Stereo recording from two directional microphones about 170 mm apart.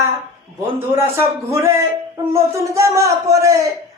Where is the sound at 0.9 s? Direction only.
15° right (ahead or behind).